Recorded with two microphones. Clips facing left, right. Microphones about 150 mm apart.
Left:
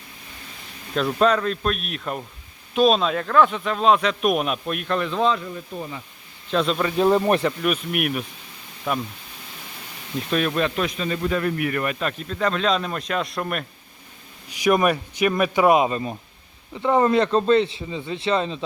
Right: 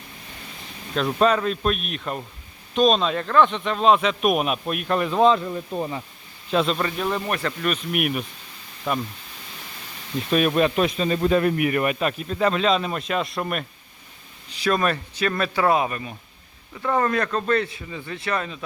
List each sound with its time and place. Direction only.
1.0 s speech: 5° right (ahead or behind)
5.7 s speech: 40° right (ahead or behind)
6.5 s speech: centre (ahead or behind)
6.9 s speech: 30° left (ahead or behind)
7.4 s speech: 5° left (ahead or behind)
10.2 s speech: 5° right (ahead or behind)
10.4 s a man's voice: 15° right (ahead or behind)
11.5 s speech: 15° right (ahead or behind)
14.5 s speech: 15° left (ahead or behind)